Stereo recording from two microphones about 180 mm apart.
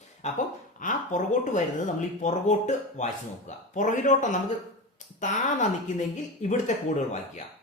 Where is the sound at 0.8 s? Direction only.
45° left (ahead or behind).